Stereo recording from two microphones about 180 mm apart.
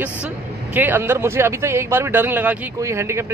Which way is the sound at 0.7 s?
10° right (ahead or behind).